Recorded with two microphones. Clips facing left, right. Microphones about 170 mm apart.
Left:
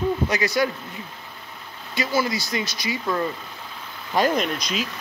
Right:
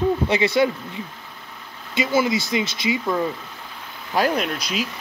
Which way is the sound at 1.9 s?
20° right (ahead or behind).